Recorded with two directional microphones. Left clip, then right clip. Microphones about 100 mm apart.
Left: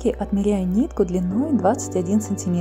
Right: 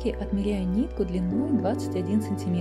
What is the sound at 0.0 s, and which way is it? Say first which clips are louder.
Speech: left 7 dB; 35° left (ahead or behind).